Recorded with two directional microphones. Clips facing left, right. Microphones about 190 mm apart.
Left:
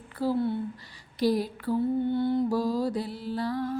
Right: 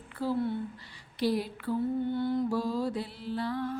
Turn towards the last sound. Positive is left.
turn(degrees=40)  # may be behind; listen again after turning